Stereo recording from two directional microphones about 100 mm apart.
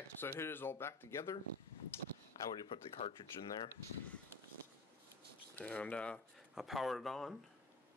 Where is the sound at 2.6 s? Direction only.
60° left (ahead or behind).